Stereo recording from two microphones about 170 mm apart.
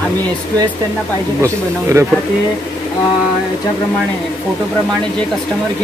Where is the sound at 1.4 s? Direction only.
15° right (ahead or behind).